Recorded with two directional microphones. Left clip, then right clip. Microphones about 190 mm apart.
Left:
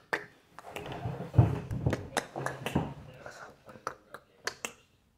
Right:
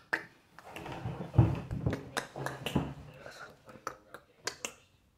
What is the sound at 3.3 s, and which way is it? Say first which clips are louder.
Finger snapping: left 1 dB; 5° left (ahead or behind).